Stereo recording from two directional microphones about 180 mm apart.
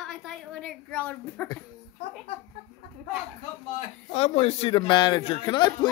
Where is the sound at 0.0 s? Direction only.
Centre (ahead or behind).